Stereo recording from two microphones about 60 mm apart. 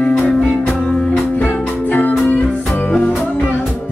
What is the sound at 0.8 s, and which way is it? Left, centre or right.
Music, centre.